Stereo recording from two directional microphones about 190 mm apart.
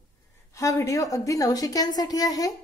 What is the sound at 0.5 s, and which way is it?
A woman's voice, 15° left (ahead or behind).